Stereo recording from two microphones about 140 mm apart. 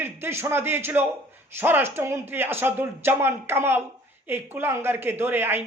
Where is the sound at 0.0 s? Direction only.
15° right (ahead or behind).